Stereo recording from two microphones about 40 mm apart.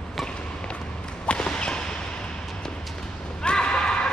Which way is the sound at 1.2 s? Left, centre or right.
Left.